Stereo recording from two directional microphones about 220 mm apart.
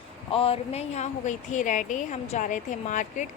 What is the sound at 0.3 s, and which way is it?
Speech, 25° left (ahead or behind).